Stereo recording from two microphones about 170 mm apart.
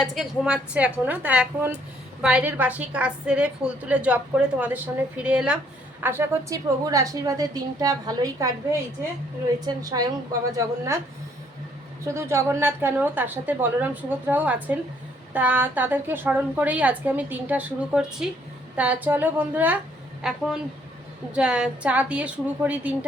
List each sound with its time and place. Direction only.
0.0 s a woman's voice: centre (ahead or behind); by 8.4 s 20° right (ahead or behind)
9.6 s a woman's voice: 20° right (ahead or behind)
12.0 s a woman's voice: 15° right (ahead or behind)